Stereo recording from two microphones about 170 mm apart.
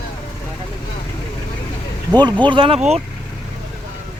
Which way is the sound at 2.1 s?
25° right (ahead or behind).